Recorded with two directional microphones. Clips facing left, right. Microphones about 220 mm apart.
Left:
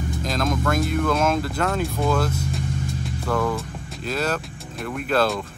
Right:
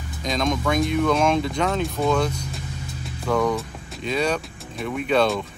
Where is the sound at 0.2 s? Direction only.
5° left (ahead or behind).